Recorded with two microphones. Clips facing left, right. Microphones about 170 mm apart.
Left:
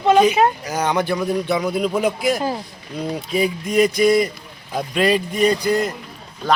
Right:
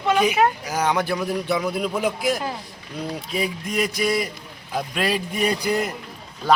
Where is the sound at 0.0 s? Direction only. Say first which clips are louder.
Left 6 dB; 30° left (ahead or behind).